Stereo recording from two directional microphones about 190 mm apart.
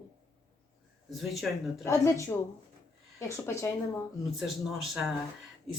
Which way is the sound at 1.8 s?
15° left (ahead or behind).